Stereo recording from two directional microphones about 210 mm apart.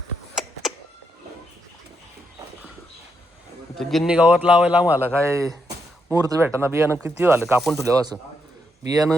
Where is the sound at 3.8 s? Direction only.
Centre (ahead or behind).